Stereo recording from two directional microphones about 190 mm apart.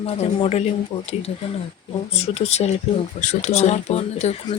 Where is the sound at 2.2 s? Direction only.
35° left (ahead or behind).